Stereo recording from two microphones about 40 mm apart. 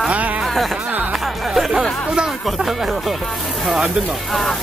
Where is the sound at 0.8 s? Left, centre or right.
Right.